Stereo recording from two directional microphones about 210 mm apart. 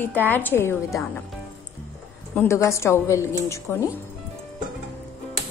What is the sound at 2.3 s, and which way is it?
A woman's voice, 15° left (ahead or behind).